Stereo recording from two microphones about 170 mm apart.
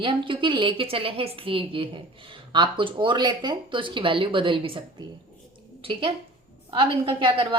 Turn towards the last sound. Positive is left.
turn(degrees=-30)  # may be behind; listen again after turning